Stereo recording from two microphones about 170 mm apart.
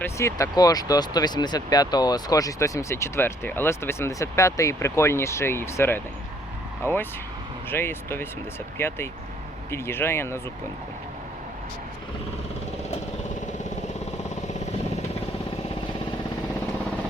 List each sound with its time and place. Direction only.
0.0 s speech: 15° left (ahead or behind)